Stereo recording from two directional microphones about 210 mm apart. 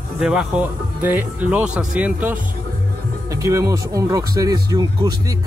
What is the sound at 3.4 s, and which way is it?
Speech, 15° right (ahead or behind).